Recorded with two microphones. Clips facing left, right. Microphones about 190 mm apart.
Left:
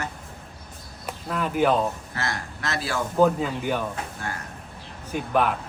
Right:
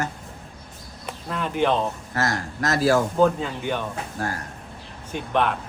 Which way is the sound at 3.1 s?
5° left (ahead or behind).